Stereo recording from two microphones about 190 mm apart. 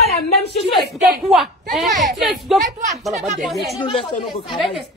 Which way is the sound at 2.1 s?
Centre (ahead or behind).